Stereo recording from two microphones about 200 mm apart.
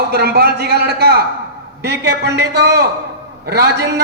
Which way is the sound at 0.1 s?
55° right (ahead or behind).